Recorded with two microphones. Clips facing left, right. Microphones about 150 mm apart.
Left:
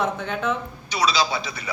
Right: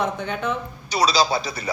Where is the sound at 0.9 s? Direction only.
35° right (ahead or behind).